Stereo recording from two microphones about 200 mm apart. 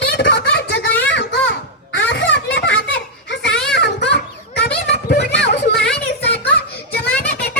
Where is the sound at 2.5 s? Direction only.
60° left (ahead or behind).